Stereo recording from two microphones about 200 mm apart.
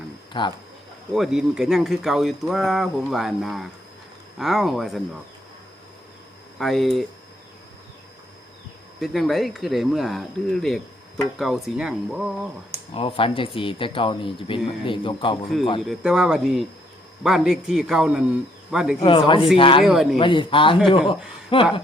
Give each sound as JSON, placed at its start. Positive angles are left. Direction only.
{"t": 0.3, "sound": "speech", "side_deg": 20}
{"t": 1.1, "sound": "speech", "side_deg": 0}
{"t": 6.6, "sound": "speech", "side_deg": 0}
{"t": 9.0, "sound": "speech", "side_deg": 0}
{"t": 12.9, "sound": "speech", "side_deg": 25}
{"t": 15.8, "sound": "speech", "side_deg": 0}
{"t": 19.0, "sound": "speech", "side_deg": 25}
{"t": 19.8, "sound": "speech", "side_deg": 0}
{"t": 20.1, "sound": "speech", "side_deg": 25}